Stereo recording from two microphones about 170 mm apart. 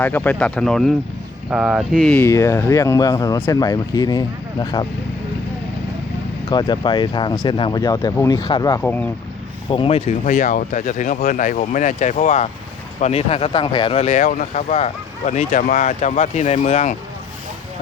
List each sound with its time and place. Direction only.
0.0 s speech: 10° left (ahead or behind); by 1.9 s 5° right (ahead or behind)
2.0 s speech: 10° left (ahead or behind)
6.5 s speech: 25° left (ahead or behind)
8.8 s speech: 10° left (ahead or behind)
9.6 s speech: 30° left (ahead or behind)
10.2 s speech: 50° left (ahead or behind)